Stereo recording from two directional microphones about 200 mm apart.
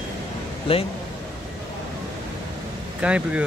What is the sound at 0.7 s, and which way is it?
Speech, 30° left (ahead or behind).